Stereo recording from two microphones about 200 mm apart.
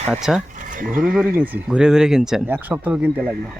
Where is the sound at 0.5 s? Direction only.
40° right (ahead or behind).